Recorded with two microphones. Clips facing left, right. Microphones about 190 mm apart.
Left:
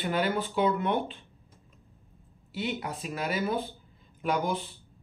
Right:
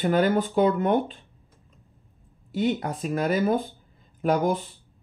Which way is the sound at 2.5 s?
45° right (ahead or behind).